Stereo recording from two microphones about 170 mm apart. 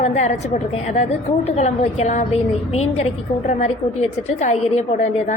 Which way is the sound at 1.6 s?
40° left (ahead or behind).